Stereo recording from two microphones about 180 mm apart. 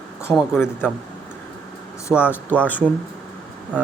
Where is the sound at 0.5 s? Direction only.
10° left (ahead or behind).